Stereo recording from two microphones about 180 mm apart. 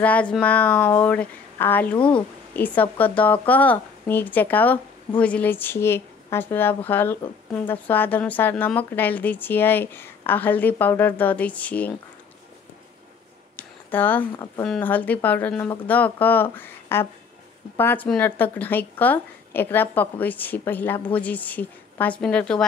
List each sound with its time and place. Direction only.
0.0 s speech: 5° left (ahead or behind)
13.6 s a sound: 10° left (ahead or behind)
14.6 s speech: 10° left (ahead or behind)